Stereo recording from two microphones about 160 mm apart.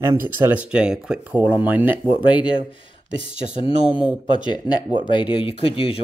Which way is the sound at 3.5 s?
35° left (ahead or behind).